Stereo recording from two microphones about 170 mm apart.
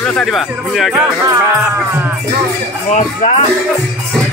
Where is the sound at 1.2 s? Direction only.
15° right (ahead or behind).